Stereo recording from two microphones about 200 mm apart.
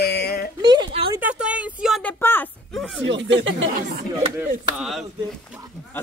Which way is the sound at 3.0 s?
65° right (ahead or behind).